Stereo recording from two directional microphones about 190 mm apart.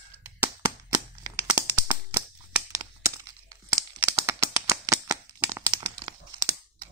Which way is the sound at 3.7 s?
10° right (ahead or behind).